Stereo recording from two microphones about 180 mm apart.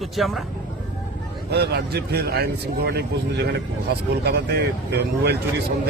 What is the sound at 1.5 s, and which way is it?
Speech, 65° right (ahead or behind).